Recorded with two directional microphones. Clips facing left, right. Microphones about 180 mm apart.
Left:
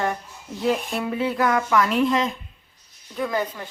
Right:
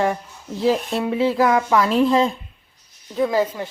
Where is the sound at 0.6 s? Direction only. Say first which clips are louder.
Right 4 dB; 30° right (ahead or behind).